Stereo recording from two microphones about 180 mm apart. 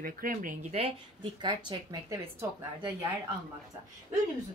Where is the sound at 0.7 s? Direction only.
30° right (ahead or behind).